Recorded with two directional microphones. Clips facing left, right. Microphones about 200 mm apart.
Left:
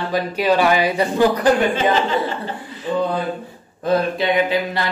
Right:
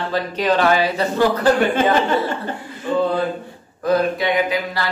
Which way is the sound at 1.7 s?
50° right (ahead or behind).